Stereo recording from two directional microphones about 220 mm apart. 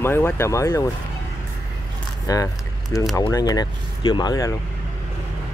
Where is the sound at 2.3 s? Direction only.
15° left (ahead or behind).